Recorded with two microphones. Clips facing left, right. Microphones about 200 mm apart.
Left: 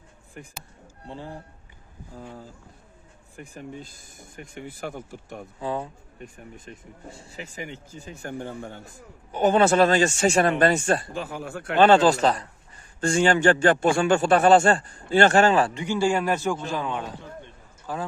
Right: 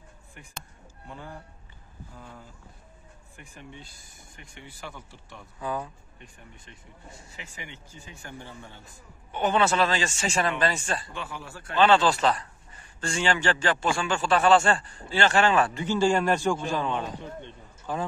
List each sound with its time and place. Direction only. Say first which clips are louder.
0.4 s speech: left 5 dB; 40° left (ahead or behind)
5.6 s speech: left 3 dB; 30° left (ahead or behind)
6.1 s speech: left 8 dB; 45° left (ahead or behind)
7.1 s speech: left 7 dB; 30° left (ahead or behind); by 11.1 s 55° left (ahead or behind)
11.1 s speech: left 6 dB; 45° left (ahead or behind)
15.7 s a man's voice: even; 15° left (ahead or behind)